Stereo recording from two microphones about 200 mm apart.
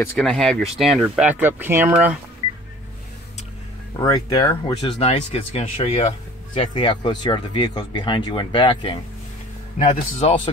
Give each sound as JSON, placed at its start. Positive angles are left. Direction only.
{"t": 0.0, "sound": "speech", "side_deg": 5}
{"t": 4.0, "sound": "a man's voice", "side_deg": 20}